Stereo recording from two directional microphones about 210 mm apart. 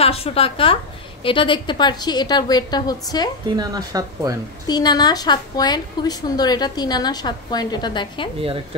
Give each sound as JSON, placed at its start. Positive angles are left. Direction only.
{"t": 0.0, "sound": "a woman's voice", "side_deg": 30}
{"t": 3.4, "sound": "speech", "side_deg": -20}
{"t": 4.6, "sound": "a woman's voice", "side_deg": 20}